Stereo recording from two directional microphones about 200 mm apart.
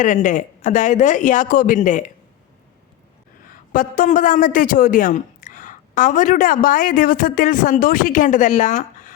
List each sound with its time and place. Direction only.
0.0 s speech: 40° left (ahead or behind)
3.7 s a woman's voice: 45° left (ahead or behind)